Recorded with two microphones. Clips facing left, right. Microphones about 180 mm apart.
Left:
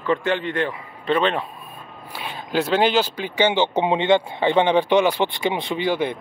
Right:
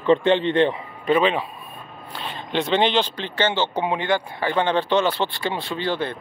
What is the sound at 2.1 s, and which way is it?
Speech, 10° left (ahead or behind).